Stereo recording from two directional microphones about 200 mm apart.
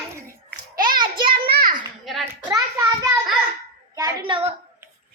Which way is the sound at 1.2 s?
50° right (ahead or behind).